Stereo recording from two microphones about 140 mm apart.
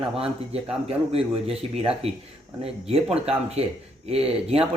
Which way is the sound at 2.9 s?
45° right (ahead or behind).